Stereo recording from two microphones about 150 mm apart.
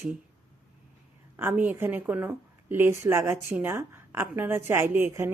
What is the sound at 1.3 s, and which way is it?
A woman's voice, 10° right (ahead or behind).